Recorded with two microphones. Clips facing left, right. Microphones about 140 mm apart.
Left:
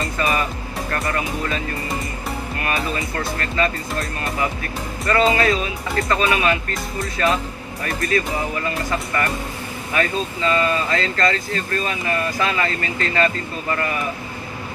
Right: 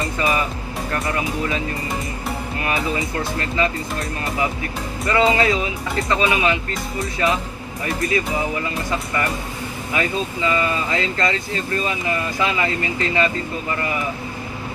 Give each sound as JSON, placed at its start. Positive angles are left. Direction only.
{"t": 0.0, "sound": "music", "side_deg": -20}
{"t": 0.9, "sound": "speech", "side_deg": -20}
{"t": 2.6, "sound": "speech", "side_deg": -20}
{"t": 9.9, "sound": "speech", "side_deg": -15}